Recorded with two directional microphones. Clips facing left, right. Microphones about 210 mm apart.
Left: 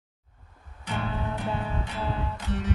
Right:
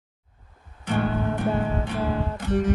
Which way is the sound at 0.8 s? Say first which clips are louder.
Right 7 dB; 50° right (ahead or behind).